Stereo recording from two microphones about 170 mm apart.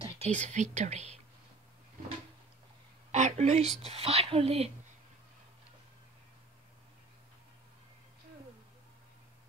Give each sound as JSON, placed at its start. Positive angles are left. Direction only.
{"t": 0.0, "sound": "speech", "side_deg": -40}
{"t": 3.1, "sound": "a sound", "side_deg": -40}
{"t": 3.8, "sound": "speech", "side_deg": -40}